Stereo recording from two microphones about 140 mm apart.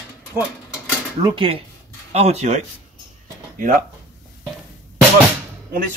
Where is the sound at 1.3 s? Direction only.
40° right (ahead or behind).